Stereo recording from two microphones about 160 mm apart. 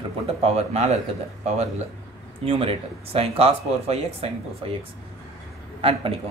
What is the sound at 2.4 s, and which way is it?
Speech, 35° right (ahead or behind).